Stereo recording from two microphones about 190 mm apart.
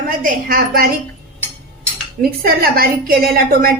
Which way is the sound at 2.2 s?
55° right (ahead or behind).